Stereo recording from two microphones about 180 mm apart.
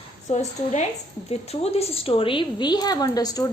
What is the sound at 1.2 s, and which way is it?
A woman's voice, 35° left (ahead or behind).